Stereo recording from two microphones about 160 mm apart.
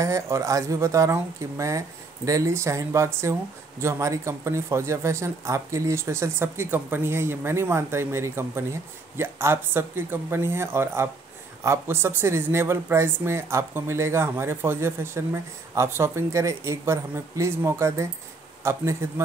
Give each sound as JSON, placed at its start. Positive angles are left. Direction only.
{"t": 0.0, "sound": "speech", "side_deg": -20}